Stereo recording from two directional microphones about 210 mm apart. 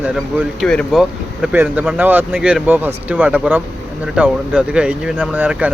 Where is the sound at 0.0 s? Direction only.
5° right (ahead or behind).